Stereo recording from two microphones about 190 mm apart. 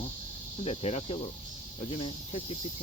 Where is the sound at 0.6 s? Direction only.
35° left (ahead or behind).